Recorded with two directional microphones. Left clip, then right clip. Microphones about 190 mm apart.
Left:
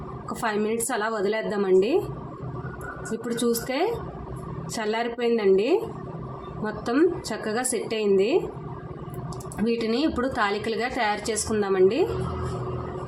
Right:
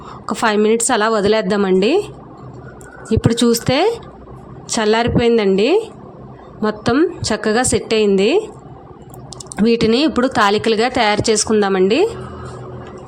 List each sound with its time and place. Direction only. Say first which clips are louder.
0.4 s a woman's voice: right 12 dB; 50° right (ahead or behind)
3.2 s a woman's voice: right 10 dB; 50° right (ahead or behind)
9.6 s a woman's voice: right 10 dB; 50° right (ahead or behind)